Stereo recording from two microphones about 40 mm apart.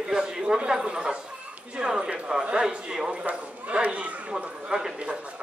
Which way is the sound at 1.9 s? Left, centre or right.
Right.